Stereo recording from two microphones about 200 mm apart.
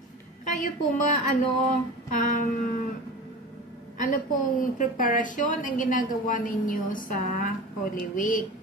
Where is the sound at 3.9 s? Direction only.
40° left (ahead or behind).